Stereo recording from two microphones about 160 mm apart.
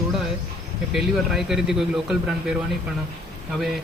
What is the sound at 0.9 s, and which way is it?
Speech, centre (ahead or behind).